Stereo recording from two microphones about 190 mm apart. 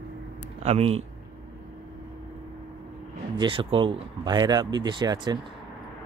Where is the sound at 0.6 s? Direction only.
35° right (ahead or behind).